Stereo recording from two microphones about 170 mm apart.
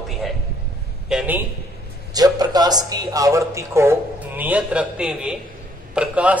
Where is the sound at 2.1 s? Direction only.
20° right (ahead or behind).